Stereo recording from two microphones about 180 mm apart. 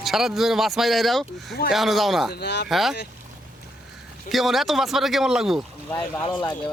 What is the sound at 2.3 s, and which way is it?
Speech, 65° left (ahead or behind).